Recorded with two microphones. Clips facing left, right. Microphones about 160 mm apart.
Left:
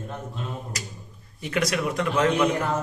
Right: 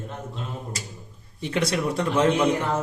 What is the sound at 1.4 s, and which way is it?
Speech, 30° right (ahead or behind).